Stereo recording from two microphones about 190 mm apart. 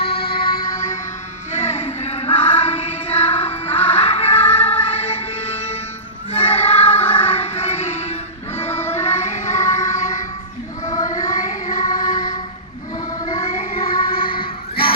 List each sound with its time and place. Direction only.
0.0 s music: 55° left (ahead or behind)
1.5 s music: 35° left (ahead or behind)
6.3 s child singing: 30° left (ahead or behind)
6.7 s music: 10° left (ahead or behind)
7.1 s music: 30° left (ahead or behind)
10.8 s child singing: 20° left (ahead or behind)
11.3 s music: 40° left (ahead or behind)
13.2 s music: 30° left (ahead or behind)
14.1 s music: 50° left (ahead or behind)